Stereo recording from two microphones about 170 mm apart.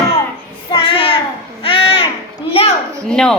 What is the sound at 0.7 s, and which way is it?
Child singing, 30° left (ahead or behind).